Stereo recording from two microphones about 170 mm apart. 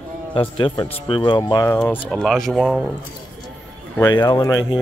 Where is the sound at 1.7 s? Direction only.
10° left (ahead or behind).